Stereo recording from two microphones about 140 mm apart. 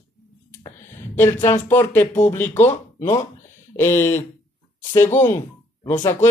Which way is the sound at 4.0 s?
15° left (ahead or behind).